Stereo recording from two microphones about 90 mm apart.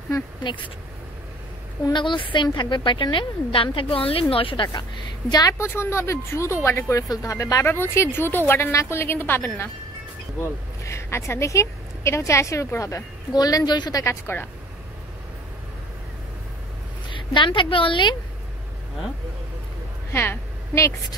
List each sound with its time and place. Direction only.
0.4 s speech: 60° left (ahead or behind)
1.9 s a woman's voice: 65° left (ahead or behind); by 5.6 s 45° left (ahead or behind)
5.6 s speech: 30° left (ahead or behind)
7.1 s speech: 40° left (ahead or behind)
7.6 s a woman's voice: 25° left (ahead or behind)
13.3 s a woman's voice: 45° left (ahead or behind)
14.3 s a woman's voice: 30° left (ahead or behind)
17.1 s a woman's voice: 65° left (ahead or behind)
20.1 s a woman's voice: 25° left (ahead or behind)